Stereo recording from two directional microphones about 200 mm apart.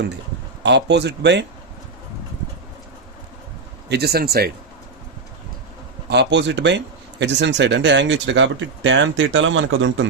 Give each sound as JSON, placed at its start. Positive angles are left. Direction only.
{"t": 0.6, "sound": "speech", "side_deg": -60}
{"t": 3.8, "sound": "speech", "side_deg": -55}
{"t": 6.1, "sound": "speech", "side_deg": -60}